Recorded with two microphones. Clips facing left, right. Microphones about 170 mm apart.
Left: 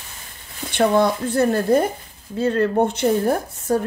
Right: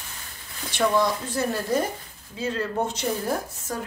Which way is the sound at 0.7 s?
55° left (ahead or behind).